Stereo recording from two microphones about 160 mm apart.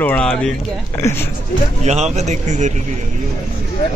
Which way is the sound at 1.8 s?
45° right (ahead or behind).